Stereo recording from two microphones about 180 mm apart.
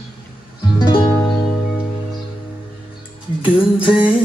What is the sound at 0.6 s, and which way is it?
Music, 25° left (ahead or behind).